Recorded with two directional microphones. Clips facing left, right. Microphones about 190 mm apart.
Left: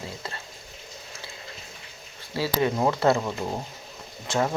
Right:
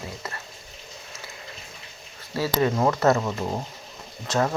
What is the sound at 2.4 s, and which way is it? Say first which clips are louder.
Speech: right 2 dB; 15° left (ahead or behind).